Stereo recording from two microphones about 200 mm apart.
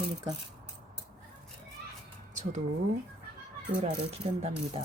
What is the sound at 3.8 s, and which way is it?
Speech, 30° right (ahead or behind).